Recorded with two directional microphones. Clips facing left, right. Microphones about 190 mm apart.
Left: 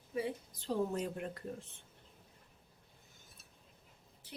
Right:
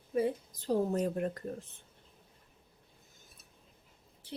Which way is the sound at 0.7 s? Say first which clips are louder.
Right 5 dB; 45° right (ahead or behind).